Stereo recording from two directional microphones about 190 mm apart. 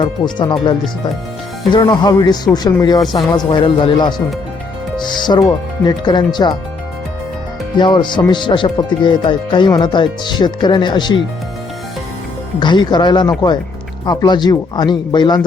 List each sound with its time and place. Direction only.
0.0 s speech: 25° left (ahead or behind)
1.7 s speech: 25° left (ahead or behind)
7.8 s speech: 25° left (ahead or behind)
12.5 s speech: 25° left (ahead or behind)